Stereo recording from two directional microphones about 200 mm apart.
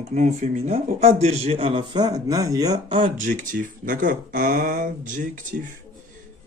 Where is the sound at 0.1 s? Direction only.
35° right (ahead or behind).